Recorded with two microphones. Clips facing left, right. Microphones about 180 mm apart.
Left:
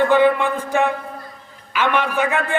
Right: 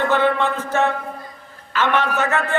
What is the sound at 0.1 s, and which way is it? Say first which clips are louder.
A man's voice: left 3 dB; 10° left (ahead or behind).